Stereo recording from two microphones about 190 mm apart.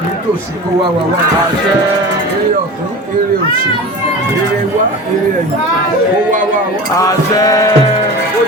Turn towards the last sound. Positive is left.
turn(degrees=20)  # may be behind; listen again after turning